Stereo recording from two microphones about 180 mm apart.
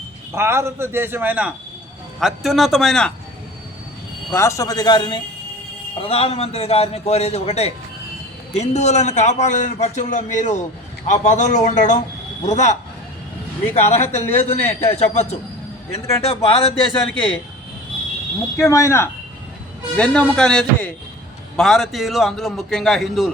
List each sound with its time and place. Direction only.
0.3 s a man's voice: 15° right (ahead or behind); by 3.1 s centre (ahead or behind)
4.3 s a man's voice: 15° left (ahead or behind); by 12.7 s 40° left (ahead or behind)
13.7 s a man's voice: 40° left (ahead or behind)
18.7 s speech: 15° left (ahead or behind)
20.0 s a man's voice: 5° left (ahead or behind)